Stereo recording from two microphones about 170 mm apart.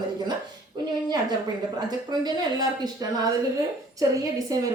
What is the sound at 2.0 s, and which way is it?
A woman's voice, 25° right (ahead or behind).